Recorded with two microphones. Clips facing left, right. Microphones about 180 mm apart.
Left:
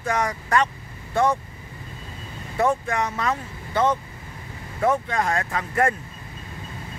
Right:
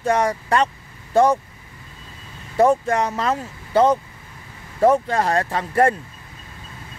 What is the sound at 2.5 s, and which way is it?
Speech, 35° right (ahead or behind).